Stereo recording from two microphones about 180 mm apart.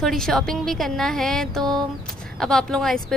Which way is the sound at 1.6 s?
25° right (ahead or behind).